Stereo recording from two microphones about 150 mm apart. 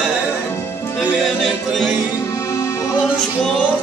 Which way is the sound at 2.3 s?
20° left (ahead or behind).